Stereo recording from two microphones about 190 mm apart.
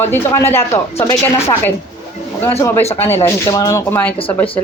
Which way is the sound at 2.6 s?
10° left (ahead or behind).